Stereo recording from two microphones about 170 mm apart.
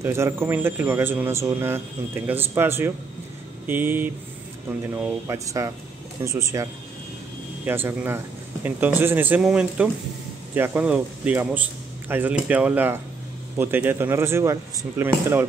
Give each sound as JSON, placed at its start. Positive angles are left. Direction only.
{"t": 0.0, "sound": "speech", "side_deg": -15}